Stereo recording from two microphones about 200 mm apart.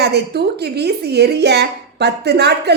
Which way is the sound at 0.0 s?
55° right (ahead or behind).